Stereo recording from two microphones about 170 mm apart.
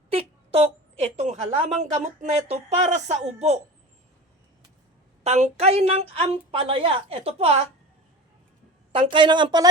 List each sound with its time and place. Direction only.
0.1 s a woman's voice: 35° right (ahead or behind)
5.2 s a woman's voice: 40° right (ahead or behind)
8.9 s a woman's voice: 30° right (ahead or behind)